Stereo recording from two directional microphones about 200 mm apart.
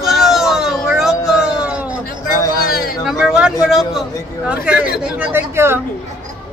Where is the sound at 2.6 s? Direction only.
50° left (ahead or behind).